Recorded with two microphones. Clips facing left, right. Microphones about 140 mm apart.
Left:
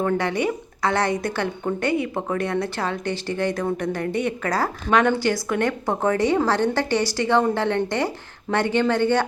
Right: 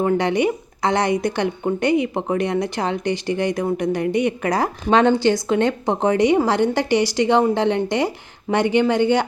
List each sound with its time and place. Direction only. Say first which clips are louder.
0.0 s speech: right 4 dB; 20° right (ahead or behind)